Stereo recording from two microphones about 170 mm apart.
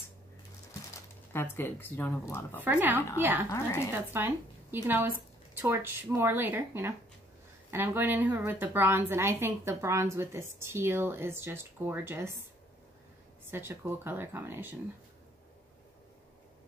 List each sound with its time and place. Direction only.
1.3 s speech: 15° left (ahead or behind)
2.6 s a woman's voice: 10° right (ahead or behind)
3.4 s speech: 15° left (ahead or behind)
4.1 s a woman's voice: 10° right (ahead or behind)
13.5 s a woman's voice: 15° right (ahead or behind)